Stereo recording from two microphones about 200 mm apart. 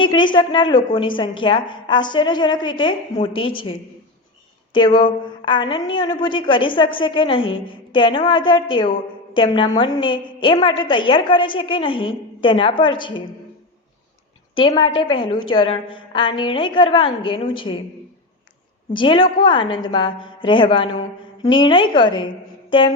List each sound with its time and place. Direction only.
0.0 s a woman's voice: 25° left (ahead or behind)
14.5 s a woman's voice: 25° left (ahead or behind)
18.9 s a woman's voice: 25° left (ahead or behind)